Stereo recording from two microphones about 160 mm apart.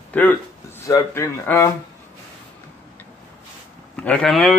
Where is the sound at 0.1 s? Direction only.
10° left (ahead or behind).